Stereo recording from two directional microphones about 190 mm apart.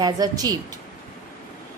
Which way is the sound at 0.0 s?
20° right (ahead or behind).